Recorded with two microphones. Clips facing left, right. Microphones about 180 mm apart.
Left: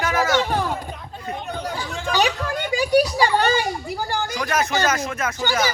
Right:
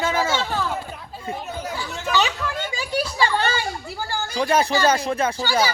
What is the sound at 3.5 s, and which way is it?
Speech, 15° left (ahead or behind).